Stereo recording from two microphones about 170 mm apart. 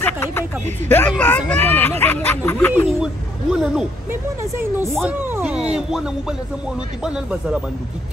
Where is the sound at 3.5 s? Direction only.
5° right (ahead or behind).